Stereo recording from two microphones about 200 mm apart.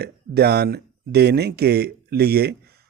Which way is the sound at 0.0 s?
55° right (ahead or behind).